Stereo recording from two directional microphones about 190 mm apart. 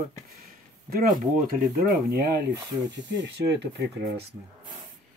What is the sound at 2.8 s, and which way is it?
Speech, 65° right (ahead or behind).